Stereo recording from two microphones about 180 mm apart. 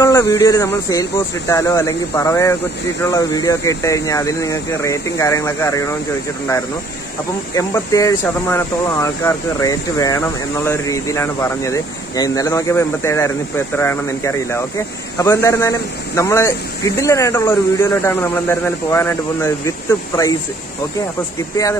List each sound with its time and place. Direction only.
0.0 s speech: 15° left (ahead or behind)
7.5 s speech: 20° left (ahead or behind)